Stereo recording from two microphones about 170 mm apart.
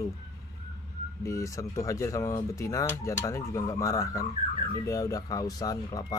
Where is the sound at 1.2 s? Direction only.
20° left (ahead or behind).